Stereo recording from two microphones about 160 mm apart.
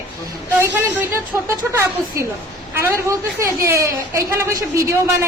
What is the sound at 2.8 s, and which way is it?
A woman's voice, 15° right (ahead or behind).